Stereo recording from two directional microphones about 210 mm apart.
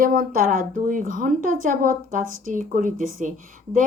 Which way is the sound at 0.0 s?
40° right (ahead or behind).